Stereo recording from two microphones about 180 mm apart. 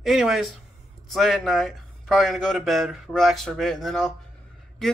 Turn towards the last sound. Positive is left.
turn(degrees=0)  # may be behind; listen again after turning